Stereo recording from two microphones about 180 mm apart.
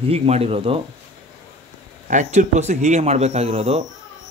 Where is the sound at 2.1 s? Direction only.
45° right (ahead or behind).